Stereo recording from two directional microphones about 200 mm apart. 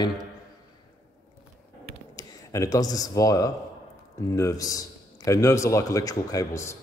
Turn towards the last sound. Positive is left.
turn(degrees=15)  # may be behind; listen again after turning